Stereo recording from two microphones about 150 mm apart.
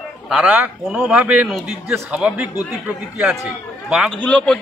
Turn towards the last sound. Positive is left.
turn(degrees=10)  # may be behind; listen again after turning